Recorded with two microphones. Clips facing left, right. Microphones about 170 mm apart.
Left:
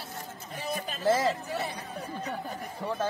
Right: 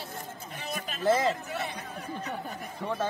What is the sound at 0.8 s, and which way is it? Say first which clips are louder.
Speech: right 1 dB; 35° left (ahead or behind).